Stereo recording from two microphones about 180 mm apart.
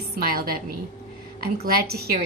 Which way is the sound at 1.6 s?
55° right (ahead or behind).